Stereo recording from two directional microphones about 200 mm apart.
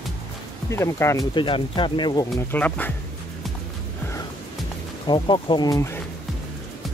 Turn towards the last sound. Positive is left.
turn(degrees=15)  # may be behind; listen again after turning